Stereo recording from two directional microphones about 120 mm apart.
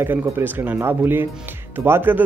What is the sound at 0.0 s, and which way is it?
Speech, 15° right (ahead or behind).